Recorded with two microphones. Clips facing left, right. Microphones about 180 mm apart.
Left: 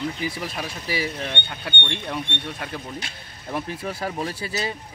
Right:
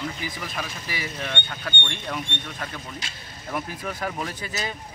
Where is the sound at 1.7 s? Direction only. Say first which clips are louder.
Left 2 dB; 20° left (ahead or behind).